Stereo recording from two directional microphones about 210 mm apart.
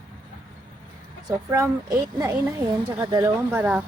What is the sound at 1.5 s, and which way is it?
A woman's voice, 15° right (ahead or behind).